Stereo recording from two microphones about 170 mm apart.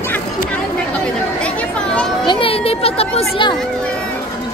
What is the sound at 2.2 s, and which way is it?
Children playing, 30° left (ahead or behind).